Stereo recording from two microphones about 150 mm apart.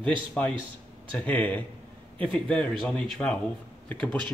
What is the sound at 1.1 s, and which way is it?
Speech, 10° left (ahead or behind).